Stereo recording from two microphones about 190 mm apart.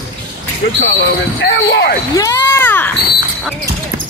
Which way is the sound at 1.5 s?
65° left (ahead or behind).